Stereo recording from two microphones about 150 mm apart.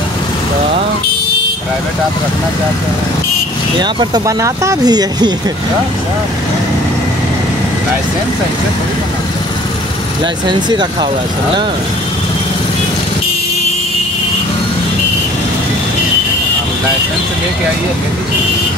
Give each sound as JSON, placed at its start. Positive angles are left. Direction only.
{"t": 3.8, "sound": "speech", "side_deg": -30}
{"t": 10.7, "sound": "speech", "side_deg": -30}